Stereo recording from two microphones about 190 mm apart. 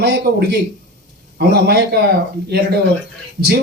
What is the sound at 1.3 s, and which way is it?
Speech, 55° right (ahead or behind).